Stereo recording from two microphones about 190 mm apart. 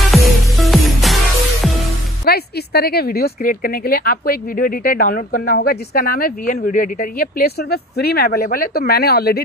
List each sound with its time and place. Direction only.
0.1 s music: centre (ahead or behind)
2.2 s speech: 55° left (ahead or behind)